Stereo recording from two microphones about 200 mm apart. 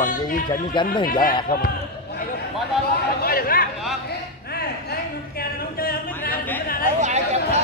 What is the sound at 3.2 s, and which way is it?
Chatter, 45° left (ahead or behind).